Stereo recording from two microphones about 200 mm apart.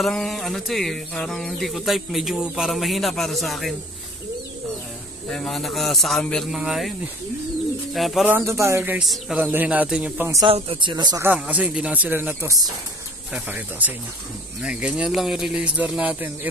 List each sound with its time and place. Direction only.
0.0 s speech: centre (ahead or behind)
5.3 s speech: centre (ahead or behind)
7.9 s a man's voice: centre (ahead or behind)
10.4 s speech: 25° right (ahead or behind)
11.2 s a man's voice: 5° right (ahead or behind)